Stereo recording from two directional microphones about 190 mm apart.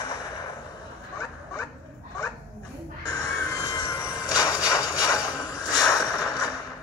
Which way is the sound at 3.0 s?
15° left (ahead or behind).